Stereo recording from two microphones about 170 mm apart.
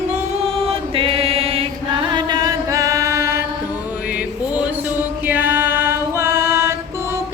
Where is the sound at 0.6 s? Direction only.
35° right (ahead or behind); by 3.5 s 15° right (ahead or behind).